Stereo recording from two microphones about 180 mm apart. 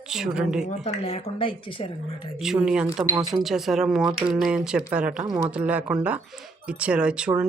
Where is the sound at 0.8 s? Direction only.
35° left (ahead or behind).